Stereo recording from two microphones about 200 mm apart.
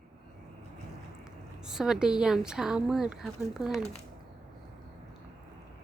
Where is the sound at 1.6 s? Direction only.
5° right (ahead or behind).